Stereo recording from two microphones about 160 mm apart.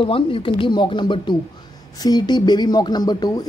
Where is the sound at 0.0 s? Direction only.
35° left (ahead or behind).